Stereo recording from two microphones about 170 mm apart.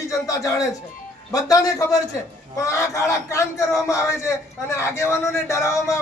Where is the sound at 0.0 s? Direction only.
20° left (ahead or behind).